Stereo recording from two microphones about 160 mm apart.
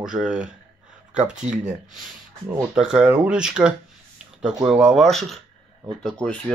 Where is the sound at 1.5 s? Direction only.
45° right (ahead or behind).